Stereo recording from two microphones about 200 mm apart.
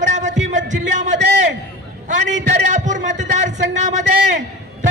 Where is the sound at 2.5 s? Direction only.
40° right (ahead or behind).